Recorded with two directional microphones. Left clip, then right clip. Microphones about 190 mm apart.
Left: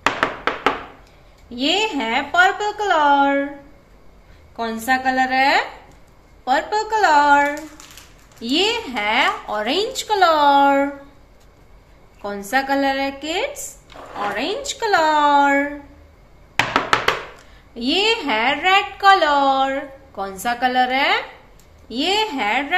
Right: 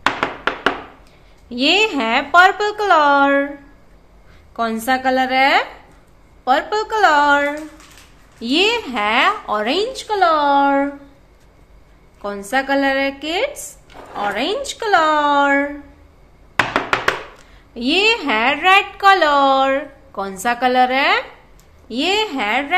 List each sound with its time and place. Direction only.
1.5 s a woman's voice: 30° right (ahead or behind)
4.6 s a woman's voice: 35° right (ahead or behind); by 10.9 s 10° right (ahead or behind)
12.2 s a woman's voice: 20° right (ahead or behind)
17.7 s a woman's voice: 25° right (ahead or behind)